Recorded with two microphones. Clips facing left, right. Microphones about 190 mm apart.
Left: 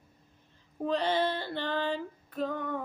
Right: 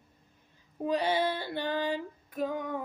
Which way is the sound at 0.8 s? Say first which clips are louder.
Even; 10° right (ahead or behind).